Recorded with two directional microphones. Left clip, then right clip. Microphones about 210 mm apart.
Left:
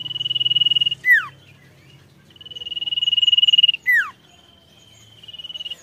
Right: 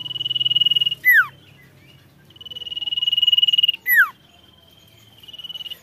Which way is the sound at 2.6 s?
30° right (ahead or behind).